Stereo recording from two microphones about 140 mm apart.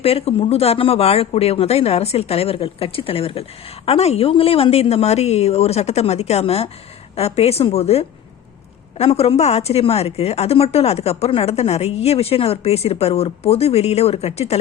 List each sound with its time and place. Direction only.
0.0 s a woman's voice: 45° left (ahead or behind)